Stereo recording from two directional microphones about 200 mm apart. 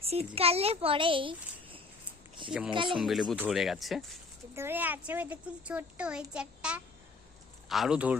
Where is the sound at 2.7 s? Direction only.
25° right (ahead or behind).